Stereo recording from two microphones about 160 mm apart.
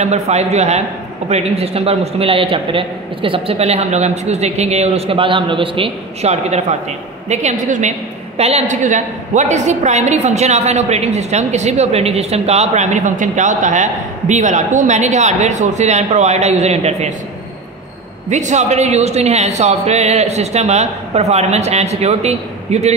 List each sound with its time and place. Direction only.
0.0 s a woman's voice: 45° right (ahead or behind)
18.3 s a woman's voice: 50° right (ahead or behind)